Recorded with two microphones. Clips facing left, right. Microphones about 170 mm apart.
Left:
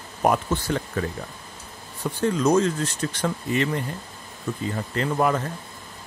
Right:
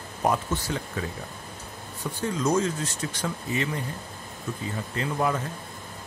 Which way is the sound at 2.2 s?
65° left (ahead or behind).